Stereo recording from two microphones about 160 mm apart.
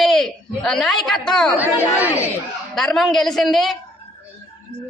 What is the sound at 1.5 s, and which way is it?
Speech, 10° right (ahead or behind).